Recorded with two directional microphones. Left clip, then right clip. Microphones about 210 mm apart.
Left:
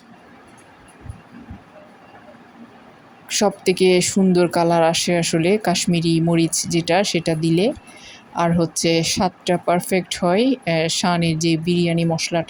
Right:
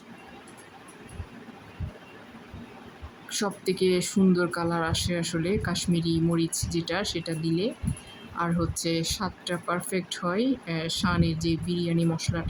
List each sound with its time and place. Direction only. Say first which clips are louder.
3.2 s speech: left 11 dB; 25° left (ahead or behind)